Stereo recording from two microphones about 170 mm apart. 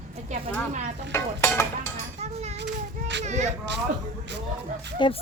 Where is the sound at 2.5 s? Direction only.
90° right.